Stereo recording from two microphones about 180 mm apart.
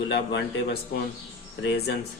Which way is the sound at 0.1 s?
75° left (ahead or behind).